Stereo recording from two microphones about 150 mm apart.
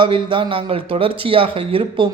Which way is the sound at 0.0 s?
35° right (ahead or behind).